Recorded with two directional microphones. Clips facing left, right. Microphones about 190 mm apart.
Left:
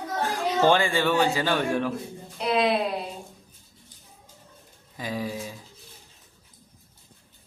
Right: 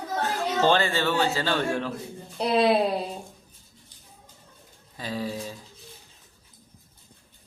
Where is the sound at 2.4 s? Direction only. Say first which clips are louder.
Right 2 dB; 35° right (ahead or behind).